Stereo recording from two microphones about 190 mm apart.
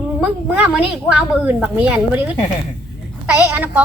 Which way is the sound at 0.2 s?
5° right (ahead or behind).